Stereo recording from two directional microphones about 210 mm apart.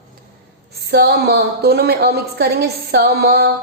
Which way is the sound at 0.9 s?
50° right (ahead or behind).